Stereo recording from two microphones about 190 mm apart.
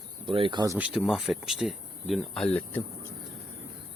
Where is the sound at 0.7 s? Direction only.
5° right (ahead or behind).